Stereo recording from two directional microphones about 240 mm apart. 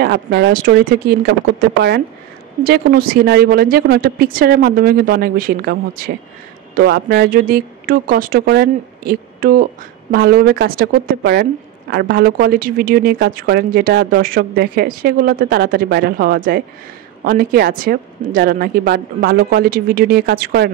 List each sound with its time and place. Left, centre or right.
0.0 s speech: right